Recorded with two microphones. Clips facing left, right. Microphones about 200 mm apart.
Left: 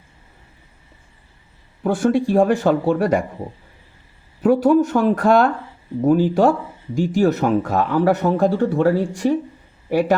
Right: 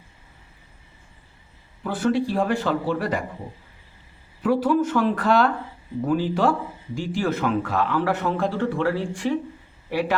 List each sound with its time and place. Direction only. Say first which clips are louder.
1.8 s speech: left 5 dB; 45° left (ahead or behind)
4.4 s speech: left 6 dB; 45° left (ahead or behind)